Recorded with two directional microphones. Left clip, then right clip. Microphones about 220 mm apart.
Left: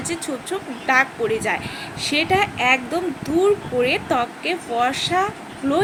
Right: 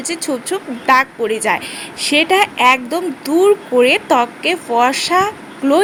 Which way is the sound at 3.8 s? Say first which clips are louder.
Right 8 dB; 45° right (ahead or behind).